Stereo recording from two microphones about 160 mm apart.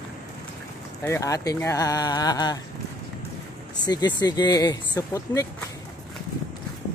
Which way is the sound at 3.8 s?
25° left (ahead or behind).